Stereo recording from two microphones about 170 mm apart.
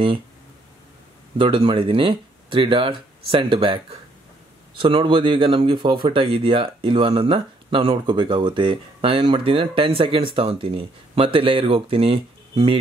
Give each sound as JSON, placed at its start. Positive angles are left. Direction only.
{"t": 1.4, "sound": "speech", "side_deg": -30}